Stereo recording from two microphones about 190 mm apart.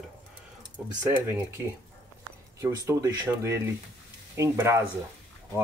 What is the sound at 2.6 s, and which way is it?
Speech, 15° right (ahead or behind).